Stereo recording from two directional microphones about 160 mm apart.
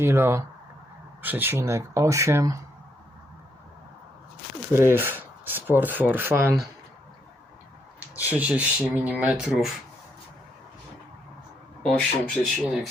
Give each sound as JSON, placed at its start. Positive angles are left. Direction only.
{"t": 0.0, "sound": "speech", "side_deg": -15}
{"t": 4.7, "sound": "speech", "side_deg": -15}
{"t": 8.2, "sound": "speech", "side_deg": -10}
{"t": 11.8, "sound": "speech", "side_deg": 5}